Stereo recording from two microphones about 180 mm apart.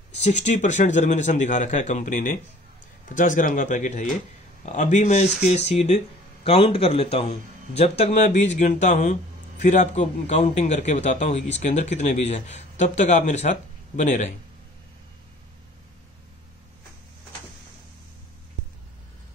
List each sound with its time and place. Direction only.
0.2 s a man's voice: 40° left (ahead or behind)